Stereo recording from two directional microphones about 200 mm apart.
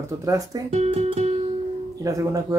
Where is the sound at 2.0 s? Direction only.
15° right (ahead or behind).